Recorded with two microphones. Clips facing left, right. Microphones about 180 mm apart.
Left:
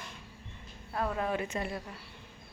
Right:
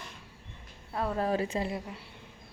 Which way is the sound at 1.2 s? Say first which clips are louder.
Right 3 dB; 35° right (ahead or behind).